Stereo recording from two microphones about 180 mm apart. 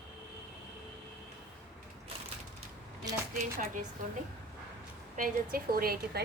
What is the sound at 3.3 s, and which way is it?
Speech, 50° right (ahead or behind).